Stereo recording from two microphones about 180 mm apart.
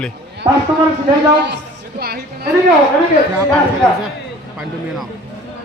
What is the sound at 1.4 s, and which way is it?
Music, 65° right (ahead or behind).